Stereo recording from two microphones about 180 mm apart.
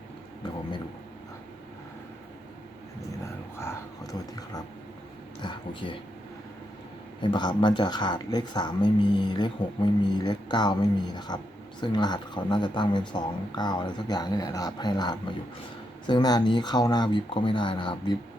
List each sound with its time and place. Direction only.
3.6 s a sound: 15° left (ahead or behind)
5.4 s speech: 25° left (ahead or behind)
7.2 s speech: 25° left (ahead or behind)